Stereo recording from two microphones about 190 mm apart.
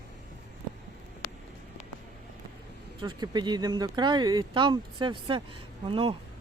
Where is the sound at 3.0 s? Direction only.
25° right (ahead or behind).